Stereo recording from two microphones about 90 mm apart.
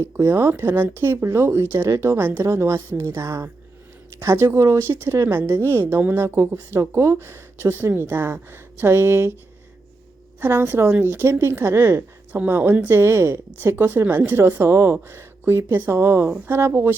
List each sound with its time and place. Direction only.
0.0 s a woman's voice: 25° right (ahead or behind)
10.4 s speech: 25° right (ahead or behind)